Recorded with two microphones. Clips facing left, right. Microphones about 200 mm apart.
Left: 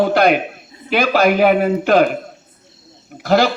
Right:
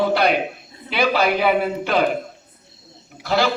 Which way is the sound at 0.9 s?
45° left (ahead or behind).